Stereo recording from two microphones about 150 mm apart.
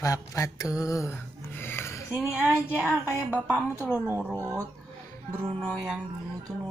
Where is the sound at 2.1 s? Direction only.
10° right (ahead or behind).